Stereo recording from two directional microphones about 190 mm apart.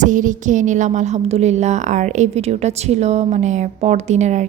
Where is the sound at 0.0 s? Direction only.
40° right (ahead or behind).